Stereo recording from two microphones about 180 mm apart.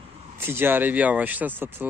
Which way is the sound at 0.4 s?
15° right (ahead or behind).